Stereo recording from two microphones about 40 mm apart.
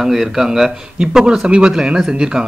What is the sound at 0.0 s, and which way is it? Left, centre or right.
A man's voice, centre.